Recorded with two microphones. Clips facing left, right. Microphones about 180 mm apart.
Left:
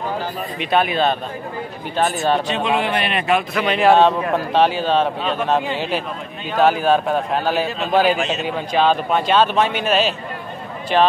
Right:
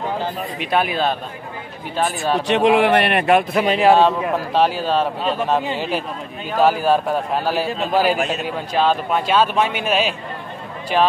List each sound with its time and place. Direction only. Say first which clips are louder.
0.6 s a man's voice: left 2 dB; 5° right (ahead or behind)
2.4 s a man's voice: right 6 dB; 80° right; by 3.4 s 60° right (ahead or behind)
3.8 s a man's voice: left 2 dB; 10° right (ahead or behind)
6.6 s a man's voice: even; 10° right (ahead or behind)